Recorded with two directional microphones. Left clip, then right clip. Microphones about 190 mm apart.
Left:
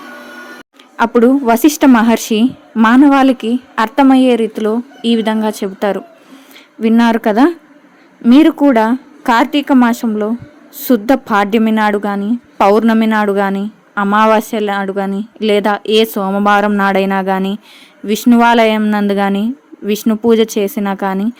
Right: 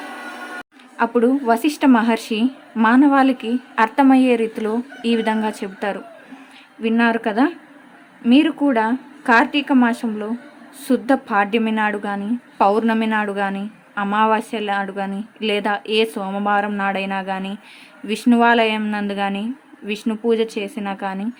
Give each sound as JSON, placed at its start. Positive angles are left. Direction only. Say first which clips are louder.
{"t": 0.9, "sound": "a woman's voice", "louder": "left 7 dB", "side_deg": 35}